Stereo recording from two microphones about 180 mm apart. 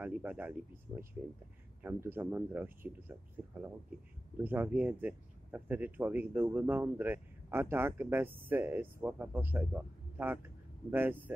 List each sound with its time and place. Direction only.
0.0 s speech: 5° right (ahead or behind)
4.4 s speech: 10° right (ahead or behind)